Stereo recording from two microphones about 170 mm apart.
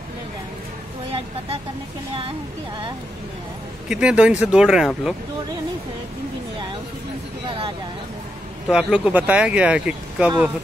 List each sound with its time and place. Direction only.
3.9 s speech: 5° right (ahead or behind)
7.4 s vehicle: 30° right (ahead or behind)
8.6 s speech: 5° right (ahead or behind)